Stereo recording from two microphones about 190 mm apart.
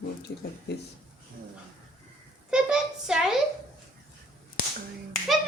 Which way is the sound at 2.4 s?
5° right (ahead or behind).